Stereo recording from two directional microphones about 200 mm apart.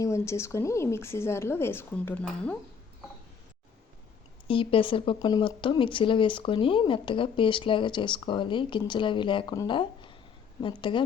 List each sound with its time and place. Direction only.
0.0 s speech: 15° left (ahead or behind)
4.4 s speech: 25° left (ahead or behind)